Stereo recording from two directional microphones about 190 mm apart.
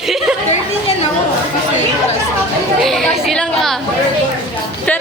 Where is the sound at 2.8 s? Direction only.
Centre (ahead or behind).